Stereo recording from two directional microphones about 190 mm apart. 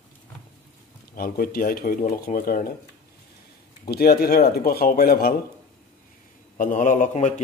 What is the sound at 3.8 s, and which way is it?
Speech, 55° left (ahead or behind).